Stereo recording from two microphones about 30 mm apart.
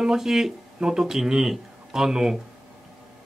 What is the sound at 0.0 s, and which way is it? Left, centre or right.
Speech, centre.